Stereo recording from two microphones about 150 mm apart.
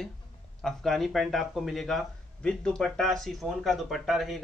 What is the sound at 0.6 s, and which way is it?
Speech, centre (ahead or behind).